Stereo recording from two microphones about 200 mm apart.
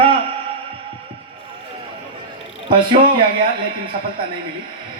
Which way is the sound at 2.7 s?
25° right (ahead or behind).